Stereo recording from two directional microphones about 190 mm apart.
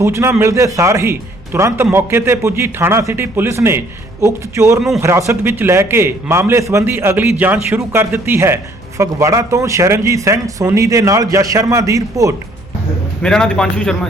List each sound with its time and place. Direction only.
0.0 s a man's voice: 15° right (ahead or behind)
13.2 s a man's voice: 5° left (ahead or behind)